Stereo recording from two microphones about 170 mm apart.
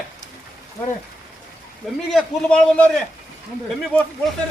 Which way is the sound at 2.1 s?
5° left (ahead or behind).